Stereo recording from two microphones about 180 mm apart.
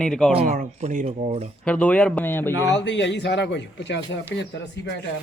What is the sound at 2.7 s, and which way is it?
Speech, 80° left.